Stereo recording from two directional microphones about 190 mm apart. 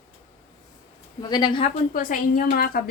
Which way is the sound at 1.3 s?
25° left (ahead or behind).